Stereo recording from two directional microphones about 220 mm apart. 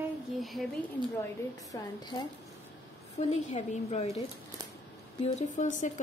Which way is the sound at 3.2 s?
30° left (ahead or behind).